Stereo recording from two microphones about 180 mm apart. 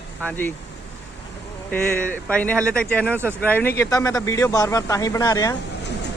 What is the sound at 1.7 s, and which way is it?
Speech, 10° left (ahead or behind).